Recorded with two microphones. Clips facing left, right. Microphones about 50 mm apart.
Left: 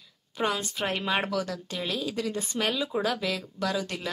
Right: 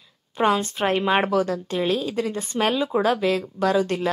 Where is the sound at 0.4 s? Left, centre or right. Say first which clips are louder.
Right 8 dB; right.